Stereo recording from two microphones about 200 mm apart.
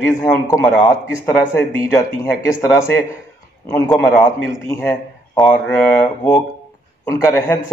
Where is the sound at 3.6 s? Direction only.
15° left (ahead or behind).